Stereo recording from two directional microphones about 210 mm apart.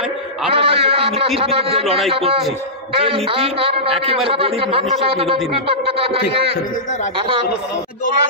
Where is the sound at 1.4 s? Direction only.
25° right (ahead or behind).